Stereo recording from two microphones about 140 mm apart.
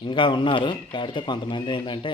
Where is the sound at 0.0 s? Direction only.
35° left (ahead or behind).